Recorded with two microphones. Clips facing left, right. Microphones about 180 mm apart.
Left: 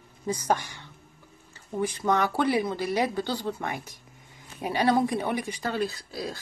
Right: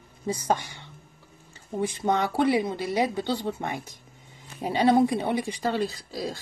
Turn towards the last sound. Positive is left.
turn(degrees=-30)  # may be behind; listen again after turning